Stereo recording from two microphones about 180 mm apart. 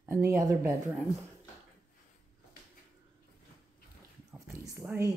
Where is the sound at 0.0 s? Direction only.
15° right (ahead or behind).